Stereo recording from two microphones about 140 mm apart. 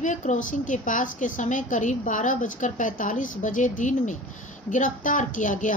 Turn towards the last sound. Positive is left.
turn(degrees=65)  # may be behind; listen again after turning